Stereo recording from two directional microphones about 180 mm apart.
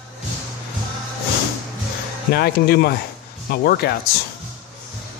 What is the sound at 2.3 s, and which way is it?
Speech, 60° left (ahead or behind).